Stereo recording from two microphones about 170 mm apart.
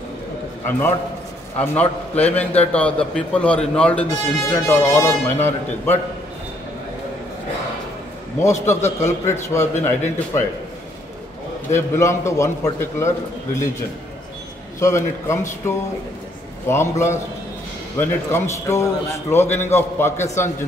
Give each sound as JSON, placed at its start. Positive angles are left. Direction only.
{"t": 0.7, "sound": "a man's voice", "side_deg": 10}
{"t": 8.6, "sound": "a man's voice", "side_deg": 15}
{"t": 11.7, "sound": "a man's voice", "side_deg": 15}
{"t": 14.8, "sound": "a man's voice", "side_deg": 15}